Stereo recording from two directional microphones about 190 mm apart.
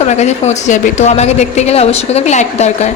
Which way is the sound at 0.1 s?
35° left (ahead or behind).